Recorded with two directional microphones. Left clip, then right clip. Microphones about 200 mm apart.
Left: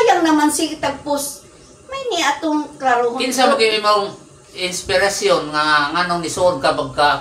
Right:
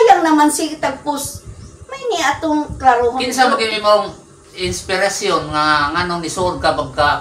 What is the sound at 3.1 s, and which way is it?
Speech, 15° left (ahead or behind).